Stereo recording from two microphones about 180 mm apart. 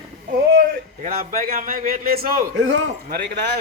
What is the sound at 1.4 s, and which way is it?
A man's voice, 50° right (ahead or behind).